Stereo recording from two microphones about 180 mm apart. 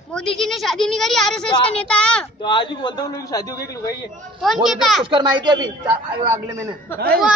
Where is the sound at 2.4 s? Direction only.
25° left (ahead or behind).